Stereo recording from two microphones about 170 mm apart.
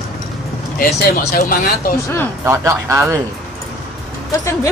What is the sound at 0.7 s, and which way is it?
Speech, 60° left (ahead or behind).